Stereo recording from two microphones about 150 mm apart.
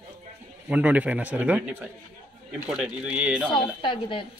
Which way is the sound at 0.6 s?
10° right (ahead or behind).